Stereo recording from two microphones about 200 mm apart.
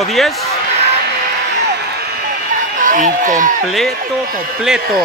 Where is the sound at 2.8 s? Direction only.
40° right (ahead or behind).